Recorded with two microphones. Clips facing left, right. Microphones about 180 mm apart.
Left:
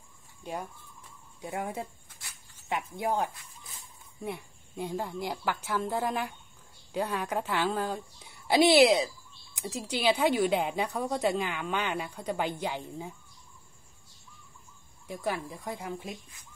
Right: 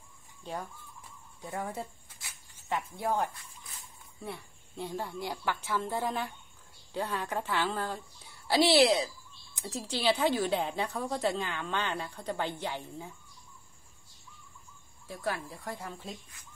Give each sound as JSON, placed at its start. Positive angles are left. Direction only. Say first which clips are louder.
{"t": 0.4, "sound": "chicken", "louder": "left 2 dB", "side_deg": 15}
{"t": 1.4, "sound": "a woman's voice", "louder": "left 2 dB", "side_deg": 15}
{"t": 15.0, "sound": "a woman's voice", "louder": "left 2 dB", "side_deg": 15}